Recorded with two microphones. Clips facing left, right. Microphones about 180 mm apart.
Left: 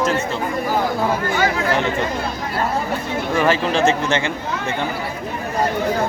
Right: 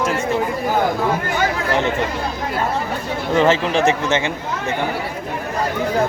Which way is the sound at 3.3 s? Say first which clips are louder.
Right 3 dB; 20° right (ahead or behind).